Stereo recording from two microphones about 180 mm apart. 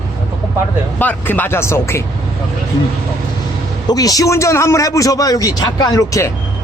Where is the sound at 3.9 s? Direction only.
20° left (ahead or behind).